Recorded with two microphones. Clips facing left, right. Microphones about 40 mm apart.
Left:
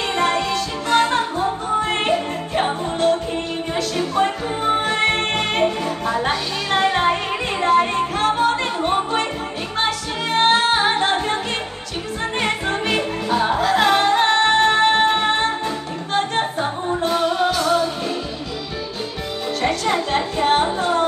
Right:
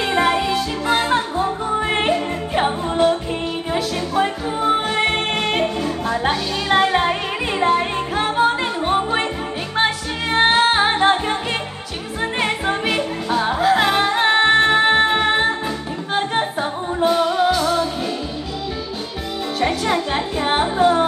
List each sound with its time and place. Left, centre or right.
0.0 s music: centre
10.5 s music: centre
19.6 s music: centre